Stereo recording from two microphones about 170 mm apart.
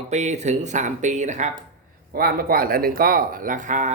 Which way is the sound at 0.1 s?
40° right (ahead or behind).